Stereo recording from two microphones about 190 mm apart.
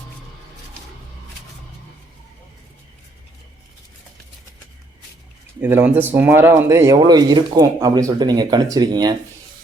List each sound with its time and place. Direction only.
5.5 s speech: 10° right (ahead or behind)